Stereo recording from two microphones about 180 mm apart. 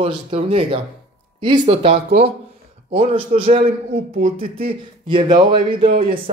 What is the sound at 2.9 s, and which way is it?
A man's voice, 30° right (ahead or behind).